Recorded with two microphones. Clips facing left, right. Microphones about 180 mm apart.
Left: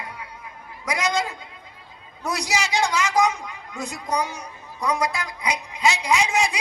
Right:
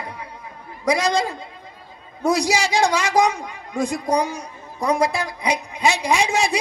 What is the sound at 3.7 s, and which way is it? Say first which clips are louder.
Speech: right 7 dB; 30° right (ahead or behind).